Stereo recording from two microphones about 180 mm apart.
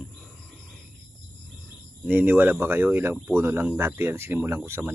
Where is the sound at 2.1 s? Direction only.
10° right (ahead or behind).